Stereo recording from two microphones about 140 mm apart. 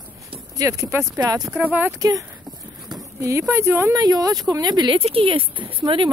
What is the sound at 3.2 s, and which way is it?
Speech, 20° right (ahead or behind).